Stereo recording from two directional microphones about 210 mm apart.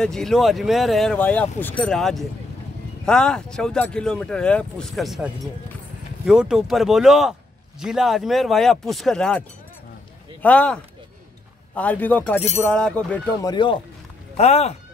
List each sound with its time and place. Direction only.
0.0 s speech: centre (ahead or behind)
10.4 s a man's voice: 5° left (ahead or behind)
13.4 s speech: 20° left (ahead or behind)